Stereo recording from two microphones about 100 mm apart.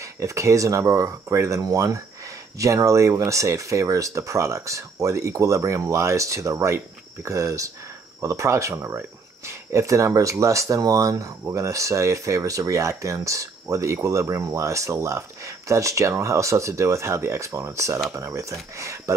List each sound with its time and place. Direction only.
0.2 s speech: 30° right (ahead or behind)